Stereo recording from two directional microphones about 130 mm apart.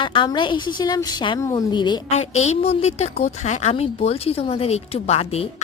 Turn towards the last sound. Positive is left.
turn(degrees=50)  # may be behind; listen again after turning